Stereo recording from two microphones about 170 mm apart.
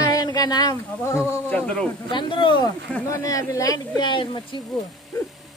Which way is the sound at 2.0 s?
30° left (ahead or behind).